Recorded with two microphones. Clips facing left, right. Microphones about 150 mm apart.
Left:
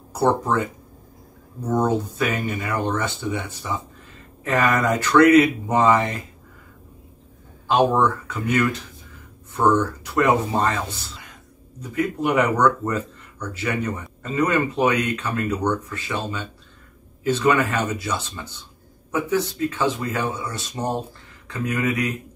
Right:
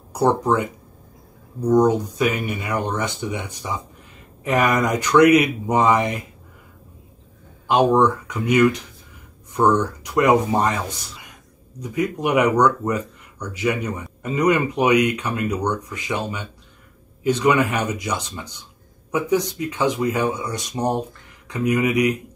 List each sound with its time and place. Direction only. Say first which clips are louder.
0.1 s speech: right 2 dB; 15° right (ahead or behind)
7.6 s speech: right 2 dB; 15° right (ahead or behind)